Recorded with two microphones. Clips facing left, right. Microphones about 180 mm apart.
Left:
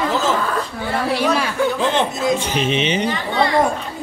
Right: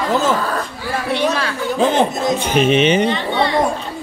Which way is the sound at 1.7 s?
50° right (ahead or behind).